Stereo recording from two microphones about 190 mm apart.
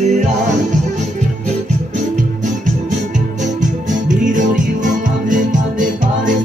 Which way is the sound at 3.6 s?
40° right (ahead or behind).